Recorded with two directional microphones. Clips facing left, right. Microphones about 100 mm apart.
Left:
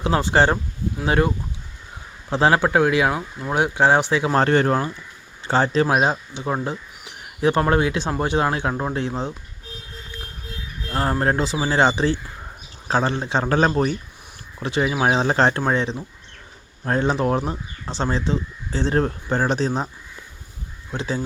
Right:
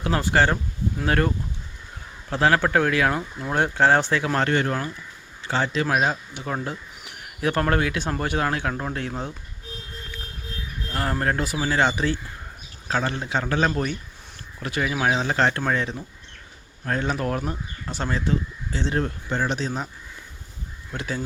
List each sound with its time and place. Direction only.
0.0 s speech: 25° left (ahead or behind)
1.0 s speech: 15° left (ahead or behind)
2.3 s speech: 20° left (ahead or behind)
3.2 s speech: 5° left (ahead or behind)
4.4 s speech: 35° left (ahead or behind)
10.9 s speech: 25° left (ahead or behind)
14.6 s speech: 25° left (ahead or behind)
15.0 s speech: 35° left (ahead or behind)
20.9 s speech: 25° left (ahead or behind)